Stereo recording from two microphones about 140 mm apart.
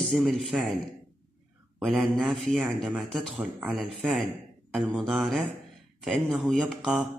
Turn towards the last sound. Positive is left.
turn(degrees=0)  # may be behind; listen again after turning